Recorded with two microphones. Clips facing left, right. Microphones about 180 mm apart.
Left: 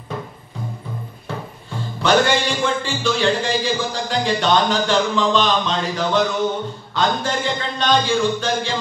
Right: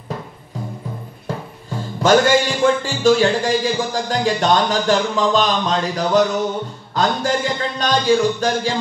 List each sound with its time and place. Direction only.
1.2 s music: 40° right (ahead or behind)
6.9 s speech: 40° right (ahead or behind)